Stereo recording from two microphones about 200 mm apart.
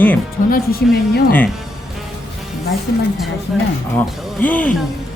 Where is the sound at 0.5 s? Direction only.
50° left (ahead or behind).